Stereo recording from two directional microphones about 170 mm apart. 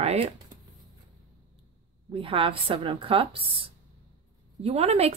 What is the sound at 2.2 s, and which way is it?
Speech, 30° right (ahead or behind).